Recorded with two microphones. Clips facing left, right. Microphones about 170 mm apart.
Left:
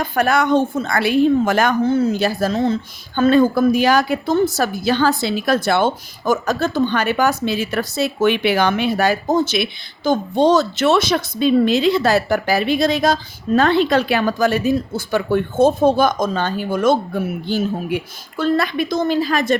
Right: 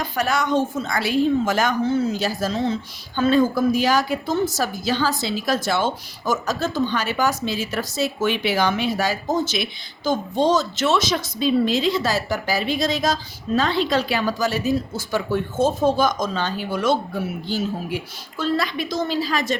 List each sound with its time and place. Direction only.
0.0 s a woman's voice: 55° left (ahead or behind)